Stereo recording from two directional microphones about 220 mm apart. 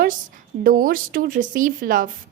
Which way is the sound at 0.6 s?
40° right (ahead or behind).